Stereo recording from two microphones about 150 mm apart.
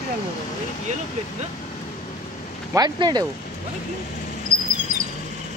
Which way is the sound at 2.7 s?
25° right (ahead or behind).